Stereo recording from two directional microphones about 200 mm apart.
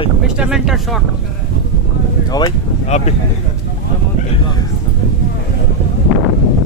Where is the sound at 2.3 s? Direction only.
20° left (ahead or behind).